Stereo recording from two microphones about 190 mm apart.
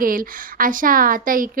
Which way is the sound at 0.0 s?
50° right (ahead or behind).